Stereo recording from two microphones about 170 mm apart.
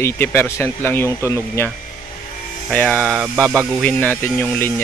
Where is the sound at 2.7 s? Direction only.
5° left (ahead or behind).